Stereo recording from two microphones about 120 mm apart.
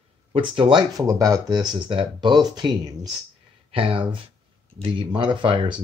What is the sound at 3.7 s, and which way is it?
Speech, 50° right (ahead or behind).